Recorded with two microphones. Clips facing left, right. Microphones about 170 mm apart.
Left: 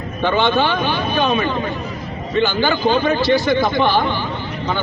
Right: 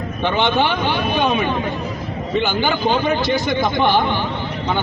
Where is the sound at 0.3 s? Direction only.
20° right (ahead or behind).